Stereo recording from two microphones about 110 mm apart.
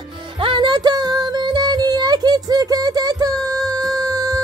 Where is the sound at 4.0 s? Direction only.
35° right (ahead or behind).